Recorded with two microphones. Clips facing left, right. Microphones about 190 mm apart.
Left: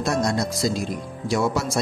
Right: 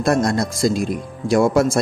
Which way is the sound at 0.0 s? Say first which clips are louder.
Right 5 dB; 55° right (ahead or behind).